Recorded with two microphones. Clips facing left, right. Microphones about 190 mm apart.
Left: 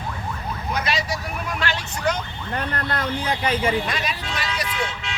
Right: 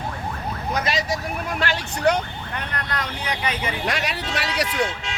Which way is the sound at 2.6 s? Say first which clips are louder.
Left 3 dB; 30° left (ahead or behind).